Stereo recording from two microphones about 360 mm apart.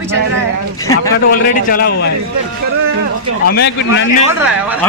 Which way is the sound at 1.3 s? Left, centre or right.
Left.